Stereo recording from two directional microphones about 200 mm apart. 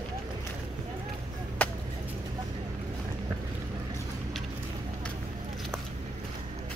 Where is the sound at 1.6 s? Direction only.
10° left (ahead or behind).